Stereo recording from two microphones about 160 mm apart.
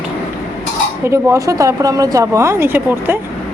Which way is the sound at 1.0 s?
15° right (ahead or behind).